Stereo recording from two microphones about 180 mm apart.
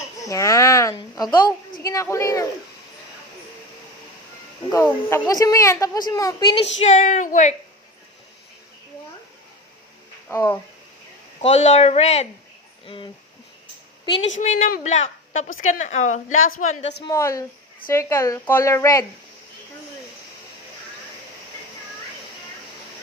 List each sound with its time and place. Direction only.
0.2 s a child's voice: 15° left (ahead or behind)
4.7 s a woman's voice: 15° left (ahead or behind)
6.8 s a woman's voice: 40° left (ahead or behind)
10.2 s a woman's voice: 15° left (ahead or behind)
11.3 s speech: 35° left (ahead or behind)
14.3 s a woman's voice: 45° left (ahead or behind)
17.0 s a woman's voice: 15° left (ahead or behind)